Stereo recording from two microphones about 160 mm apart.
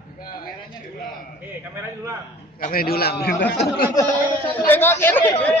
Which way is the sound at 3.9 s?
15° left (ahead or behind).